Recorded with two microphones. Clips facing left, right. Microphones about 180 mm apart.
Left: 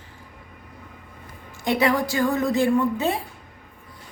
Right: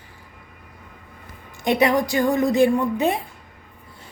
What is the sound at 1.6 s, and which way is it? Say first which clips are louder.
A woman's voice: right 2 dB; 20° right (ahead or behind).